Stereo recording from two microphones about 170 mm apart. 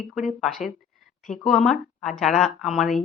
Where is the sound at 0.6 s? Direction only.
45° left (ahead or behind).